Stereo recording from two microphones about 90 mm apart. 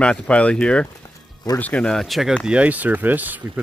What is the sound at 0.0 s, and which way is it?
Speech, 10° left (ahead or behind).